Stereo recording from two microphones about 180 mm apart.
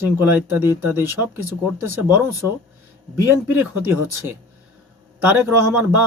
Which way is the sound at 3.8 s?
15° right (ahead or behind).